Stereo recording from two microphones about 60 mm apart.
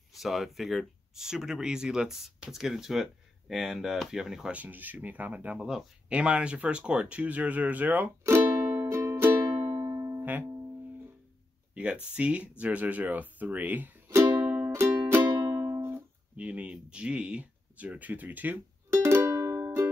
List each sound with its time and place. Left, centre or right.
0.1 s speech: centre
4.5 s speech: right
5.6 s speech: centre
6.0 s speech: centre
8.5 s music: right
9.7 s music: right
11.7 s speech: centre
14.8 s music: right
15.4 s music: right
16.3 s speech: right
18.9 s music: right